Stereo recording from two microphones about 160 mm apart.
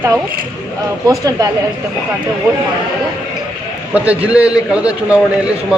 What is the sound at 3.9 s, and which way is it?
A man's voice, 10° right (ahead or behind).